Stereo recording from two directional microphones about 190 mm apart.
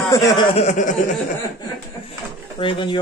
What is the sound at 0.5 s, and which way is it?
Speech, 40° left (ahead or behind).